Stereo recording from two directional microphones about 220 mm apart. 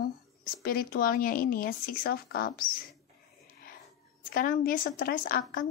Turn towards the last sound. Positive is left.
turn(degrees=40)  # may be behind; listen again after turning